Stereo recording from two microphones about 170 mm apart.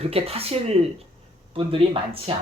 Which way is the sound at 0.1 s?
35° right (ahead or behind).